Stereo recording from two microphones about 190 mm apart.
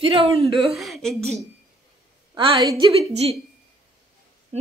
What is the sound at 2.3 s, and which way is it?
A woman's voice, 25° right (ahead or behind).